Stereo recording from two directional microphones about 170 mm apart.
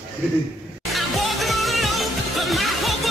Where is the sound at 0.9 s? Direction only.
Centre (ahead or behind).